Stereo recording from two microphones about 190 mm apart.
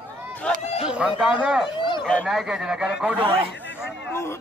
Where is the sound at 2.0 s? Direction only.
Centre (ahead or behind).